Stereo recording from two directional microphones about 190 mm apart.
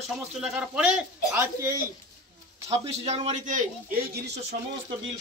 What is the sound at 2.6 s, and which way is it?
A man's voice, 35° right (ahead or behind).